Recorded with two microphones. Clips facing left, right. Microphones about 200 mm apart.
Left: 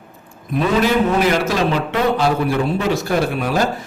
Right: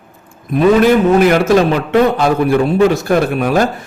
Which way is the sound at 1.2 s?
55° right (ahead or behind).